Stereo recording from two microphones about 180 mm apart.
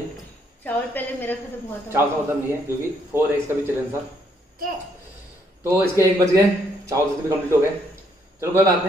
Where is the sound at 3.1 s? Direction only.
15° right (ahead or behind).